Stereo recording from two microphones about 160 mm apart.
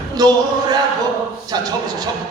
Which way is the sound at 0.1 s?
25° right (ahead or behind).